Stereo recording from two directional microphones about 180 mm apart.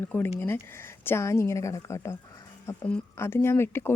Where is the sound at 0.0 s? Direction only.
10° left (ahead or behind).